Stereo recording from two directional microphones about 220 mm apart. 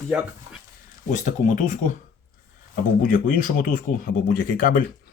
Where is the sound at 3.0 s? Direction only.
40° left (ahead or behind).